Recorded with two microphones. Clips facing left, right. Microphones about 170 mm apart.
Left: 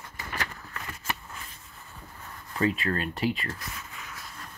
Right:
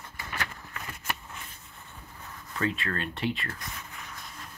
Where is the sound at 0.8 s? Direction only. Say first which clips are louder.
Left 1 dB; 5° right (ahead or behind).